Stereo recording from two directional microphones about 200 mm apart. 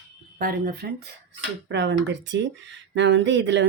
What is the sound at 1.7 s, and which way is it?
Speech, 65° right (ahead or behind).